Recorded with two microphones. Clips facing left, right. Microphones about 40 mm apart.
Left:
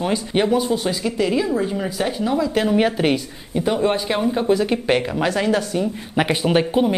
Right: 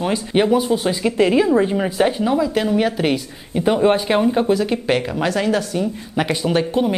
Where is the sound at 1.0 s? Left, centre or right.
Right.